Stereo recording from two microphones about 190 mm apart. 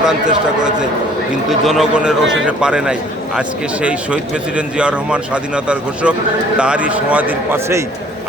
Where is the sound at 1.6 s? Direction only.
Centre (ahead or behind).